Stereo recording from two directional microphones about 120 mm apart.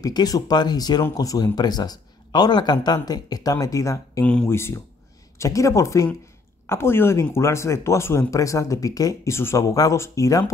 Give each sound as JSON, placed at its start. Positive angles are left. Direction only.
{"t": 0.0, "sound": "speech", "side_deg": 30}
{"t": 4.2, "sound": "speech", "side_deg": 10}
{"t": 4.5, "sound": "speech", "side_deg": 20}